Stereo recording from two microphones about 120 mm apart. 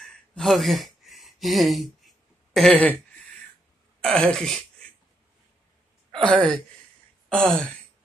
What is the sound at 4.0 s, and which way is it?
Speech, 10° left (ahead or behind).